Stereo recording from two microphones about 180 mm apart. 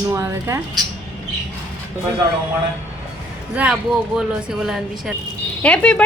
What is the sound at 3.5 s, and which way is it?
A woman's voice, 5° right (ahead or behind).